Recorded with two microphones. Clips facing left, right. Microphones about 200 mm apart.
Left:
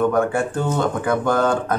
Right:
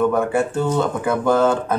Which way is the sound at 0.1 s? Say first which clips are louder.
Right 1 dB; 5° right (ahead or behind).